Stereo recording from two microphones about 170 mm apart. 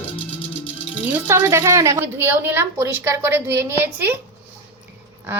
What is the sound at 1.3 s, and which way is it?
A woman's voice, 15° right (ahead or behind).